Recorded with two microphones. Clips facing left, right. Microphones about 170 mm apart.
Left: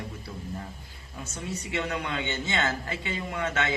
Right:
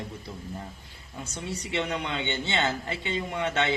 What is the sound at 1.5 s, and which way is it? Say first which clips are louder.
A man's voice: right 1 dB; 25° right (ahead or behind).